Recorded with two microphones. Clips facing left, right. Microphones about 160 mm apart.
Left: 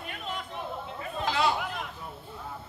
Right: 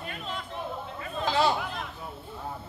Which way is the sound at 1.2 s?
30° right (ahead or behind).